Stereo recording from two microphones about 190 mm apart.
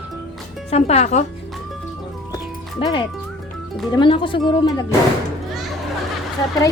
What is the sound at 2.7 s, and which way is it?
A woman's voice, 25° left (ahead or behind).